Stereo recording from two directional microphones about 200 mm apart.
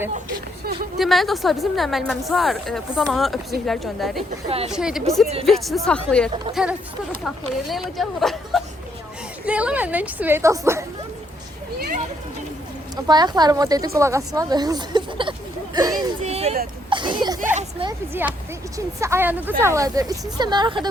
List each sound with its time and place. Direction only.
0.6 s a sound: 50° right (ahead or behind)
0.9 s a woman's voice: centre (ahead or behind)
4.4 s a woman's voice: 30° right (ahead or behind)
4.7 s a woman's voice: 5° right (ahead or behind)
13.1 s speech: 20° right (ahead or behind)
16.2 s a sound: 30° right (ahead or behind)
16.9 s speech: 25° right (ahead or behind)
17.4 s a sound: 35° right (ahead or behind)
18.2 s speech: 10° right (ahead or behind)